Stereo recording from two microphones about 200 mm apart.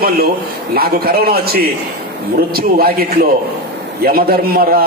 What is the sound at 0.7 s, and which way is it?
Speech, 50° right (ahead or behind).